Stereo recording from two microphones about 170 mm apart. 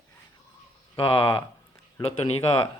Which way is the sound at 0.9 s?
30° left (ahead or behind).